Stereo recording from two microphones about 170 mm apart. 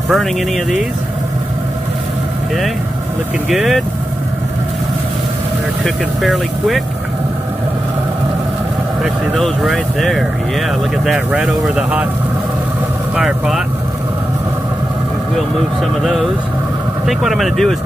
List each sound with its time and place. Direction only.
0.1 s speech: centre (ahead or behind)
3.4 s speech: centre (ahead or behind)
5.9 s speech: centre (ahead or behind)
9.0 s speech: centre (ahead or behind)
13.1 s speech: 5° right (ahead or behind)
15.8 s speech: centre (ahead or behind)